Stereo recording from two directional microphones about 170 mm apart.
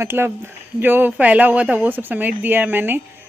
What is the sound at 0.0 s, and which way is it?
Speech, 15° right (ahead or behind).